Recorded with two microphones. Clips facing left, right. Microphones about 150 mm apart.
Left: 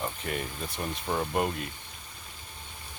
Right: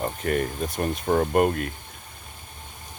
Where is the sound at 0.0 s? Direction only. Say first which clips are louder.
Right 8 dB; 50° right (ahead or behind).